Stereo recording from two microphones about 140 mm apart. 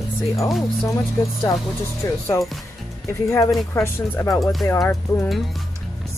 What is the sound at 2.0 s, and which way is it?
Speech, 25° left (ahead or behind).